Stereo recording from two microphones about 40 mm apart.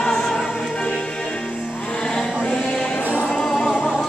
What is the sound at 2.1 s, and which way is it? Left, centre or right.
Chant, centre.